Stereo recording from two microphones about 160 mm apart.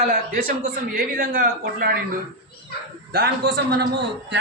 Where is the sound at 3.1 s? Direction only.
90° right.